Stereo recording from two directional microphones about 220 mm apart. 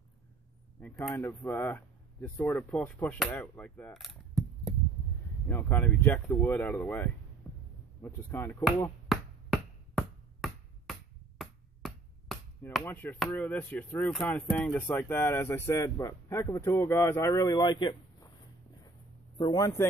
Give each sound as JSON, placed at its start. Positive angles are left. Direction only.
{"t": 0.7, "sound": "speech", "side_deg": 5}
{"t": 5.5, "sound": "speech", "side_deg": 10}
{"t": 7.5, "sound": "heart sounds", "side_deg": 10}
{"t": 8.0, "sound": "speech", "side_deg": 10}
{"t": 8.6, "sound": "chop", "side_deg": 0}
{"t": 19.3, "sound": "speech", "side_deg": 15}